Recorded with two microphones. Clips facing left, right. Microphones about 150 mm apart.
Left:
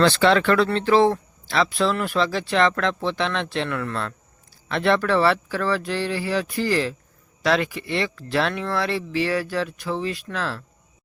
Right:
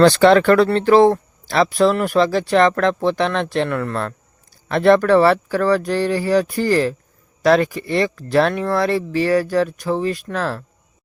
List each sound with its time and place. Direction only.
0.0 s speech: 45° right (ahead or behind)